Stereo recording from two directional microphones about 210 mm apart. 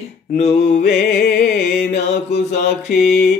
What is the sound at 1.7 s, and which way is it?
Mantra, 50° left (ahead or behind).